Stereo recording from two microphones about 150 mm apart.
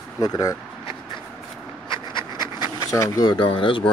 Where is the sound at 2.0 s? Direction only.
25° right (ahead or behind).